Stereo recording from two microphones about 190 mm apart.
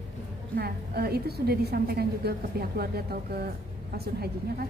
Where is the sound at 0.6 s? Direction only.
55° right (ahead or behind).